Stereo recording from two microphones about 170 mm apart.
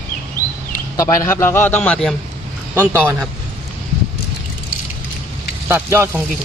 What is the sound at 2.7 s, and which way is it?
Speech, 10° right (ahead or behind).